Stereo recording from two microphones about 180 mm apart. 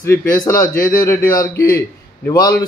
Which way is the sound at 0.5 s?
50° left (ahead or behind).